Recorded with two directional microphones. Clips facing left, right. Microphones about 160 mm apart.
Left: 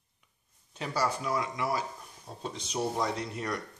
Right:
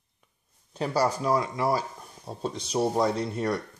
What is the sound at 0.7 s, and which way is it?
Speech, 35° right (ahead or behind).